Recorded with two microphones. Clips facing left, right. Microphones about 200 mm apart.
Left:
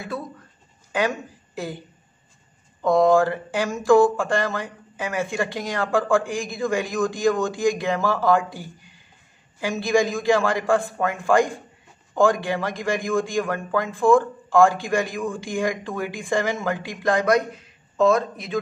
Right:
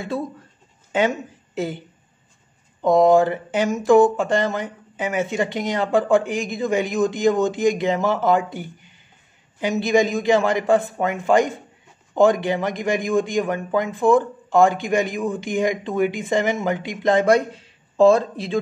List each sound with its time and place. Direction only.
0.9 s a woman's voice: 20° right (ahead or behind)
2.8 s a man's voice: 20° right (ahead or behind)